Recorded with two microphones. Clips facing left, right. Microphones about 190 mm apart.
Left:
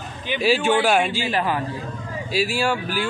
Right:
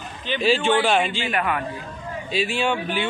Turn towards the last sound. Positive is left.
turn(degrees=0)  # may be behind; listen again after turning